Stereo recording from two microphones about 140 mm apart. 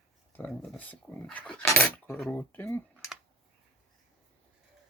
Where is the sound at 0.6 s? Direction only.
10° left (ahead or behind).